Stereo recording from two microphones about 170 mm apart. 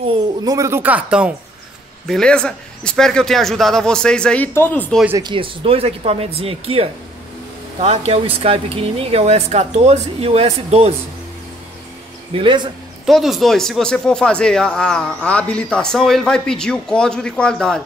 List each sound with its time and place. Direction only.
0.1 s speech: 20° right (ahead or behind)
2.0 s speech: 5° left (ahead or behind)
5.2 s speech: 30° right (ahead or behind)
12.4 s speech: 30° right (ahead or behind)
13.0 s speech: centre (ahead or behind)